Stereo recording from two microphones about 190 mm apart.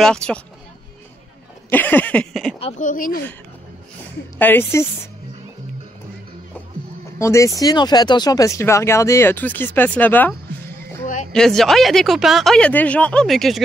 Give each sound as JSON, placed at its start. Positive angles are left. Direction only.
{"t": 0.0, "sound": "speech", "side_deg": 5}
{"t": 1.7, "sound": "speech", "side_deg": 10}
{"t": 2.8, "sound": "speech", "side_deg": 45}
{"t": 4.4, "sound": "speech", "side_deg": 10}
{"t": 7.2, "sound": "speech", "side_deg": 15}
{"t": 11.3, "sound": "speech", "side_deg": 0}